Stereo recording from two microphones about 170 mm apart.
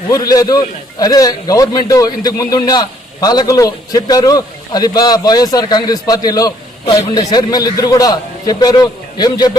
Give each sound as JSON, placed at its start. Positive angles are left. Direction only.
{"t": 0.1, "sound": "a man's voice", "side_deg": 20}